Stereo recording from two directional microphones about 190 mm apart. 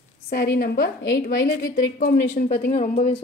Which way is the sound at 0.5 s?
50° left (ahead or behind).